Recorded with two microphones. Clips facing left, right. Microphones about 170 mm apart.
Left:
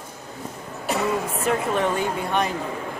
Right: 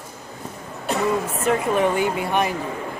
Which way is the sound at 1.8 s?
10° right (ahead or behind).